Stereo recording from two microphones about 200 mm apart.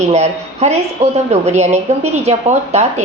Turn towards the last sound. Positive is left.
turn(degrees=-35)  # may be behind; listen again after turning